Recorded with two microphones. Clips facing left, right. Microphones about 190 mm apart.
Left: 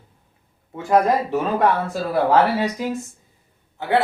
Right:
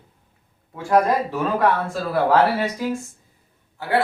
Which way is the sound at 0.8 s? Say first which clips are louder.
Left 1 dB; 20° left (ahead or behind).